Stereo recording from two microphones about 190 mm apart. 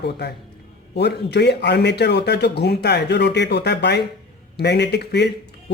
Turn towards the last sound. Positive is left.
turn(degrees=60)  # may be behind; listen again after turning